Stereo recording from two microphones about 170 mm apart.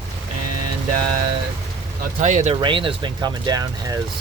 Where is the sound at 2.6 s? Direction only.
30° right (ahead or behind).